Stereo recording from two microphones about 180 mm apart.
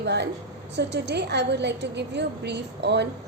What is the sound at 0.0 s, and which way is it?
A woman's voice, 70° right (ahead or behind).